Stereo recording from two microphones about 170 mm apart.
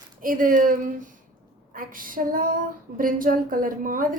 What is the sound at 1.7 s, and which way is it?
Female singing, 55° right (ahead or behind).